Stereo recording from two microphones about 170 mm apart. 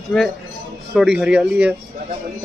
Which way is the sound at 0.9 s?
Centre (ahead or behind).